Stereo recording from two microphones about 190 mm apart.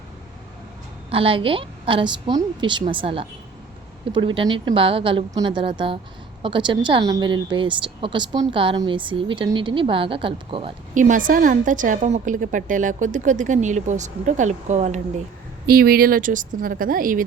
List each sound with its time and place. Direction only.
1.1 s a woman's voice: 30° right (ahead or behind)
10.9 s a woman's voice: 40° right (ahead or behind)
15.6 s a woman's voice: 55° right (ahead or behind)